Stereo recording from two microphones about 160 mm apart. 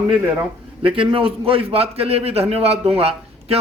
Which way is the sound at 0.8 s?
35° right (ahead or behind).